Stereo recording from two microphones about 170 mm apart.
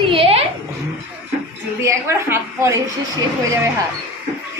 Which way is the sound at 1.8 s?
15° right (ahead or behind).